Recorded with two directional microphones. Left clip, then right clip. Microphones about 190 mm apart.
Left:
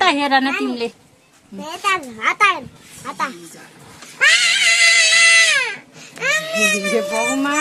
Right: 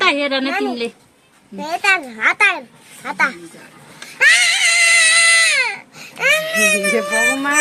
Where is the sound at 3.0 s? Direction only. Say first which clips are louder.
Right 6 dB; 35° right (ahead or behind).